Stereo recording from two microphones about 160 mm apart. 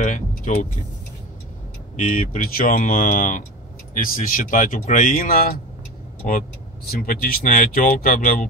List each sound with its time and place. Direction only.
0.0 s speech: 55° left (ahead or behind)
2.0 s speech: 55° left (ahead or behind)
6.9 s speech: 65° left (ahead or behind)